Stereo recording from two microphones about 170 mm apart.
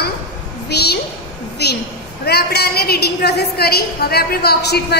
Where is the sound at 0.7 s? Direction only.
75° left (ahead or behind).